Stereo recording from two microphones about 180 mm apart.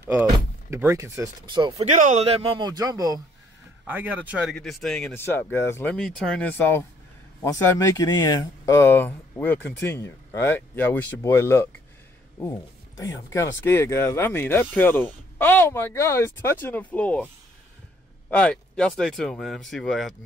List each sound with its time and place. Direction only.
0.0 s speech: 10° right (ahead or behind)
1.8 s a man's voice: 40° right (ahead or behind); by 3.2 s 20° right (ahead or behind)
3.8 s speech: 10° right (ahead or behind); by 11.7 s 15° left (ahead or behind)
13.0 s speech: 15° left (ahead or behind)
18.3 s speech: 5° left (ahead or behind)